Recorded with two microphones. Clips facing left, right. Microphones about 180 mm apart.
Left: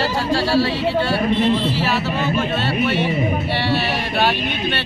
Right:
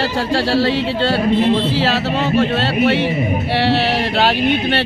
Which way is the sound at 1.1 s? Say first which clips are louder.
Right 5 dB; 75° right (ahead or behind).